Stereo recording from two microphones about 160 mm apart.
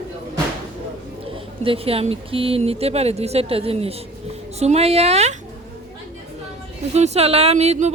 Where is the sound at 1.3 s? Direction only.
35° right (ahead or behind).